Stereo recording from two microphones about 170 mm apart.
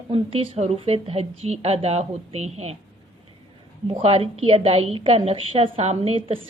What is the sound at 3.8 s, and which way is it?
Speech, 35° right (ahead or behind).